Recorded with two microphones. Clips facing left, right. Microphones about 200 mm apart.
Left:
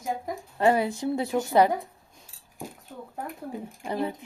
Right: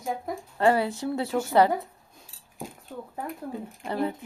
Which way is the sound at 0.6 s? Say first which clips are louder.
Even; 15° left (ahead or behind).